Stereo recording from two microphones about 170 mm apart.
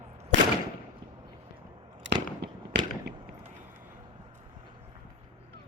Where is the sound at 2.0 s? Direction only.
90° right.